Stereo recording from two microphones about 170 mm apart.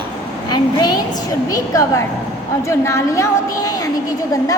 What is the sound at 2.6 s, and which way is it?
A woman's voice, 15° left (ahead or behind).